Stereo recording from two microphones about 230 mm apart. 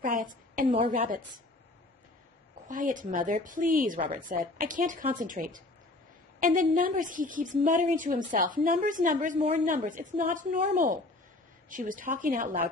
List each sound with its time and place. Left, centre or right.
0.0 s a sound: right
0.6 s a woman's voice: right
2.7 s a woman's voice: right